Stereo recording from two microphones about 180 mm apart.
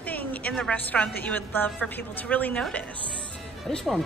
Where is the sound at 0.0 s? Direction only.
10° left (ahead or behind).